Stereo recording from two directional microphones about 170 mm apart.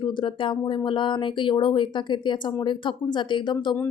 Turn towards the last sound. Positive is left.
turn(degrees=25)  # may be behind; listen again after turning